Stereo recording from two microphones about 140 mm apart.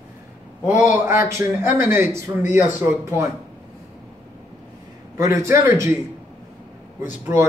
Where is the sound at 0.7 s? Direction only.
15° right (ahead or behind).